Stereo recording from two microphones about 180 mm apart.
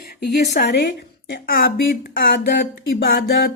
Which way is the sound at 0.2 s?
65° left (ahead or behind).